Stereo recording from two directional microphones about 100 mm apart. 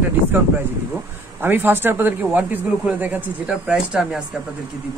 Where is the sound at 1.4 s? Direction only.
20° right (ahead or behind).